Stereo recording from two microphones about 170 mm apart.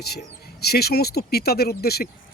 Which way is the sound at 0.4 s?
70° left (ahead or behind).